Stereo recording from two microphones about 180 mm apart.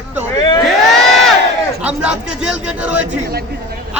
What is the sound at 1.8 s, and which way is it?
Speech, 5° right (ahead or behind).